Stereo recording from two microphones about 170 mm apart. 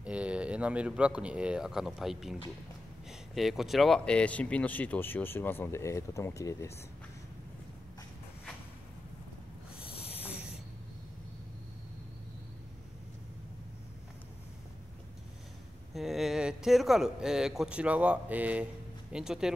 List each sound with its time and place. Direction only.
0.0 s speech: 5° right (ahead or behind); by 6.7 s 20° left (ahead or behind)
15.9 s speech: centre (ahead or behind)